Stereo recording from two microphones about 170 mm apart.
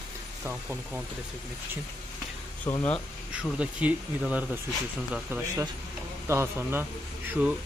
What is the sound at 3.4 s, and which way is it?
Speech, 5° right (ahead or behind).